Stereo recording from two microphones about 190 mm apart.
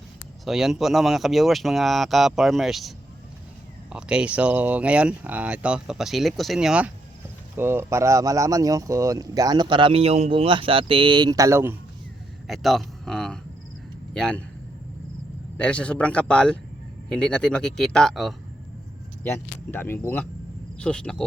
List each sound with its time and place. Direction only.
0.4 s speech: centre (ahead or behind)
3.9 s speech: 5° right (ahead or behind)
12.5 s speech: centre (ahead or behind)
15.5 s speech: 5° left (ahead or behind)
19.7 s speech: 10° left (ahead or behind)